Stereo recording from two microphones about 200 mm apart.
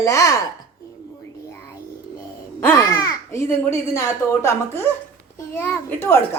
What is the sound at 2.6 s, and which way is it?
A child's voice, 15° left (ahead or behind).